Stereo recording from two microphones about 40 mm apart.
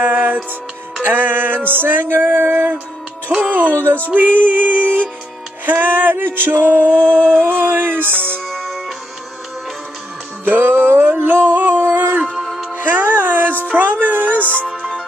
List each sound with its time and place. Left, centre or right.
0.0 s music: right
3.3 s music: right
6.5 s music: right
7.0 s a sound: left
7.2 s music: right
7.5 s music: right
8.5 s music: centre
10.4 s music: right
10.7 s a sound: right
11.7 s a sound: right
12.3 s music: centre
12.7 s music: right
13.7 s a sound: right
14.4 s music: left